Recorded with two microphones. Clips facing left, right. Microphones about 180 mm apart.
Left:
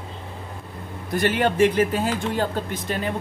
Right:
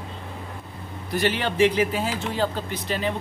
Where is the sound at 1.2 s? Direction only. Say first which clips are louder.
Left 2 dB; 50° left (ahead or behind).